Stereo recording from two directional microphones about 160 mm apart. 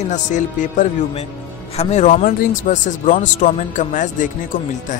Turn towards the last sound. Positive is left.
turn(degrees=55)  # may be behind; listen again after turning